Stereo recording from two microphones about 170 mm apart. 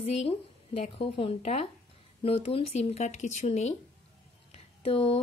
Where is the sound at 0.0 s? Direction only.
35° left (ahead or behind).